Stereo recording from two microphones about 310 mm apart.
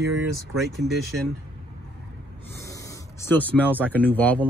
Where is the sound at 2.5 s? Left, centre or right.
Centre.